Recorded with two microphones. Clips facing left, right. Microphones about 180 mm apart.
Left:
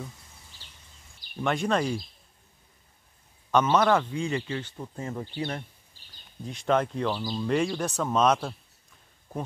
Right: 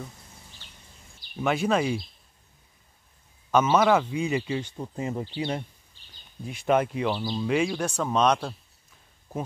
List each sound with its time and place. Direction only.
1.4 s speech: 5° right (ahead or behind)
3.5 s speech: 5° right (ahead or behind)